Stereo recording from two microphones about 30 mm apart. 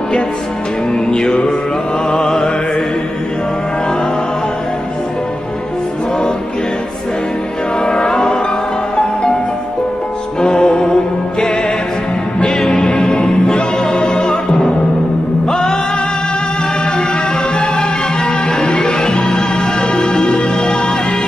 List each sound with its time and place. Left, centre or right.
7.8 s music: left
10.4 s music: left
12.7 s music: left
14.2 s music: left
18.8 s music: left